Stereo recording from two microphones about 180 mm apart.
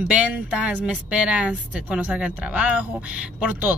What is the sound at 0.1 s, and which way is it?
A woman's voice, 10° right (ahead or behind).